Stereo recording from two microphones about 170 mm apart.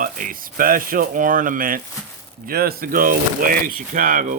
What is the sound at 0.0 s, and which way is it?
Speech, 55° right (ahead or behind).